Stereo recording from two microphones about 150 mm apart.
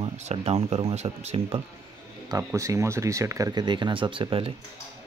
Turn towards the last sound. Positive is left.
turn(degrees=-35)  # may be behind; listen again after turning